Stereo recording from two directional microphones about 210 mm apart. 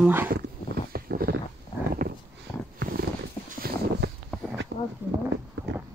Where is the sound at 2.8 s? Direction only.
45° right (ahead or behind).